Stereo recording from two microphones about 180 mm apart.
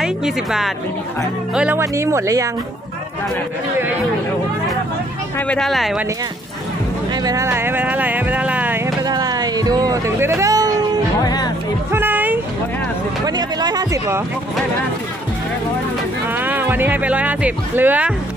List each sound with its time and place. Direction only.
0.0 s speech: 5° right (ahead or behind)
5.5 s speech: centre (ahead or behind)
7.2 s speech: 15° right (ahead or behind)
9.0 s music: 20° right (ahead or behind)
11.2 s music: 20° left (ahead or behind)
11.9 s a sound: 10° right (ahead or behind)
13.2 s speech: 20° right (ahead or behind)
16.3 s speech: 10° right (ahead or behind)